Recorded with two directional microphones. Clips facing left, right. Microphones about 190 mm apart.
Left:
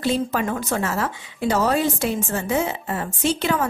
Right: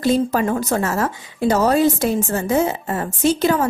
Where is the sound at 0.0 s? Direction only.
40° right (ahead or behind).